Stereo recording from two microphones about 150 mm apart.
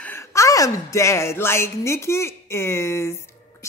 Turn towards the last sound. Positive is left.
turn(degrees=15)  # may be behind; listen again after turning